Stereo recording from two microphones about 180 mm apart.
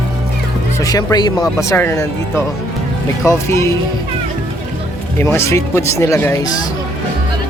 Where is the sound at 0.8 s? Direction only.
20° left (ahead or behind).